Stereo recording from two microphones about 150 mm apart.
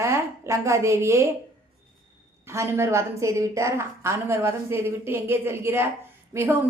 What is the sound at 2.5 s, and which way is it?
A woman's voice, 20° right (ahead or behind).